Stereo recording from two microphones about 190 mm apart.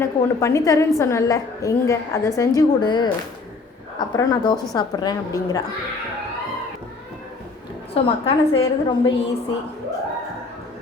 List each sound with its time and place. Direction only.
0.0 s a woman's voice: 15° left (ahead or behind)
7.9 s a woman's voice: 30° left (ahead or behind)